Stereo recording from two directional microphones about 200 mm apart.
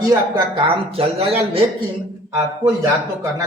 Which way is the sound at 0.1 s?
25° right (ahead or behind).